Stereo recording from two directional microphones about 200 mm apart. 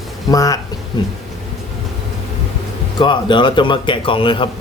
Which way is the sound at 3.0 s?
25° left (ahead or behind).